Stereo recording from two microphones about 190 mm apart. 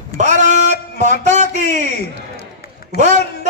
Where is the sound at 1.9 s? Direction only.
55° left (ahead or behind).